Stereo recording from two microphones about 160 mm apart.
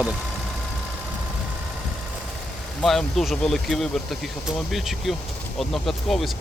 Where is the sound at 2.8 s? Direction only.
Centre (ahead or behind).